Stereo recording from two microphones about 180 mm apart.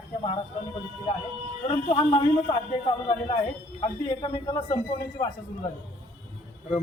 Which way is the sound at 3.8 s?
25° left (ahead or behind).